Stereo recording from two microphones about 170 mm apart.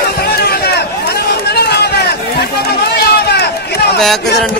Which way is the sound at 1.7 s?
75° left (ahead or behind).